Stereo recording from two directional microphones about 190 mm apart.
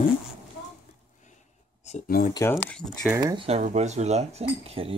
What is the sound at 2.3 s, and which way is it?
Speech, 15° left (ahead or behind).